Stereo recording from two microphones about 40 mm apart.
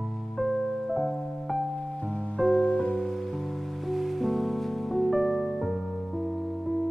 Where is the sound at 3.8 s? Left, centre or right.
Centre.